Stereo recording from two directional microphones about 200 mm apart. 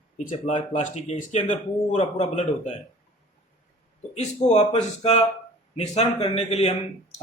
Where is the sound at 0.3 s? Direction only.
35° left (ahead or behind).